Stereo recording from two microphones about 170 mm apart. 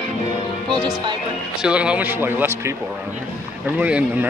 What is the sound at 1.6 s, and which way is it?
Speech, 5° right (ahead or behind).